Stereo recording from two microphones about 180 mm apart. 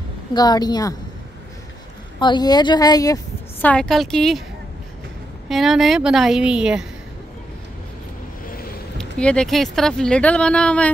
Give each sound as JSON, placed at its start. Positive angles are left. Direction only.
{"t": 0.3, "sound": "speech", "side_deg": 20}
{"t": 2.1, "sound": "speech", "side_deg": 25}
{"t": 3.6, "sound": "speech", "side_deg": 5}
{"t": 5.5, "sound": "speech", "side_deg": 0}
{"t": 8.9, "sound": "speech", "side_deg": 5}